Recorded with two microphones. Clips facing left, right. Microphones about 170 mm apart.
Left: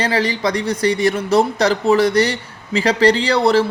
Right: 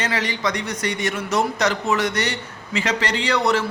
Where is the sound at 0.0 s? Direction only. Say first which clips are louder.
Left 6 dB; 35° left (ahead or behind).